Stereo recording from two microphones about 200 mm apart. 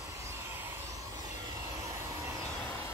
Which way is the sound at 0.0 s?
15° right (ahead or behind).